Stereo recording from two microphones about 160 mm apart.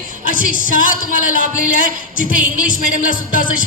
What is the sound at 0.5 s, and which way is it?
A woman's voice, 55° left (ahead or behind).